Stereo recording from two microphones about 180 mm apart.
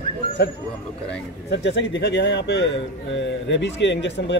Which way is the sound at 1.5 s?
80° left.